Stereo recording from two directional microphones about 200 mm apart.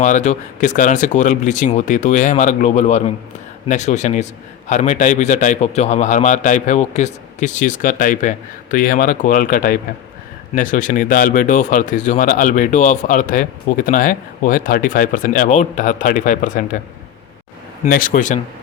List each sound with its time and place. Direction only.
0.0 s speech: 40° left (ahead or behind)
17.8 s speech: 45° left (ahead or behind)